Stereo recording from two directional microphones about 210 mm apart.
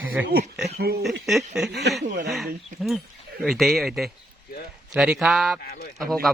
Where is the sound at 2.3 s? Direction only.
Centre (ahead or behind).